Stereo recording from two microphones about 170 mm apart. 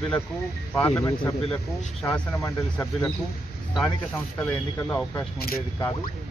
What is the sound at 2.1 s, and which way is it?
Speech, 10° left (ahead or behind).